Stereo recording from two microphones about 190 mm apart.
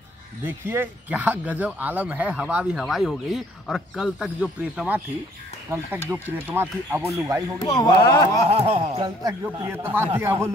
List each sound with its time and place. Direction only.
0.5 s speech: 10° right (ahead or behind)
7.6 s speech: 20° left (ahead or behind)
8.5 s speech: 30° right (ahead or behind)
9.7 s speech: 10° right (ahead or behind)